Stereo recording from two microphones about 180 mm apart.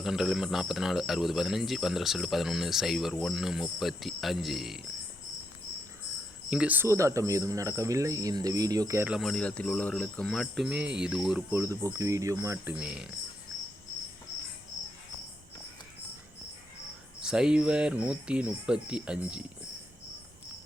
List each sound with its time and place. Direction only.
0.0 s a man's voice: centre (ahead or behind)
6.5 s speech: 5° right (ahead or behind)
9.0 s a man's voice: centre (ahead or behind)
11.5 s speech: 15° right (ahead or behind)
12.7 s a man's voice: 5° right (ahead or behind)
17.2 s a man's voice: 5° right (ahead or behind)